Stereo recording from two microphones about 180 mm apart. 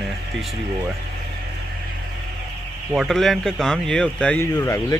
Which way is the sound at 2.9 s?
Centre (ahead or behind).